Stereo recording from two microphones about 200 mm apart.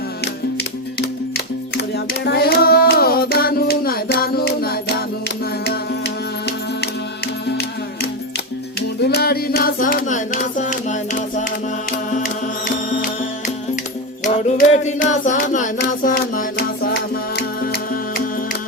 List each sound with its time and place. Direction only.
1.7 s music: 55° left (ahead or behind)
9.0 s a sound: 55° left (ahead or behind); by 11.4 s 35° left (ahead or behind)
11.9 s music: 45° left (ahead or behind)
14.3 s music: 35° left (ahead or behind)